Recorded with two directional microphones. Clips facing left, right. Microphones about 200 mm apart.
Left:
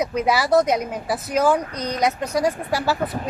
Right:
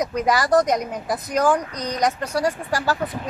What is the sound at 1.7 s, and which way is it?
Speech, 35° right (ahead or behind).